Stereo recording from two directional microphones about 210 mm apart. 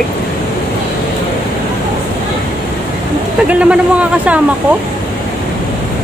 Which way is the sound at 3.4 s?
5° right (ahead or behind).